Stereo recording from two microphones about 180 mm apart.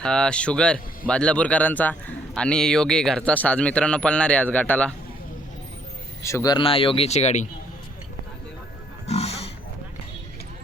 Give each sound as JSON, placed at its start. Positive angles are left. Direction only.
{"t": 0.0, "sound": "speech", "side_deg": 5}
{"t": 6.2, "sound": "speech", "side_deg": 20}
{"t": 9.0, "sound": "wild animals", "side_deg": 35}